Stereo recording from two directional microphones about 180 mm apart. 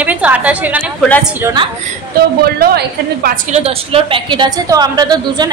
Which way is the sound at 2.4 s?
60° right (ahead or behind).